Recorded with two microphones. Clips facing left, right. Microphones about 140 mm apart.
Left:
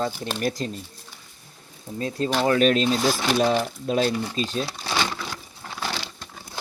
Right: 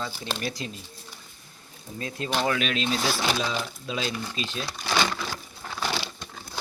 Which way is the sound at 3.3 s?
55° left (ahead or behind).